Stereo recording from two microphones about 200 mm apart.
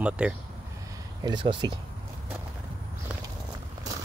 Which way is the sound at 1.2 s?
25° right (ahead or behind).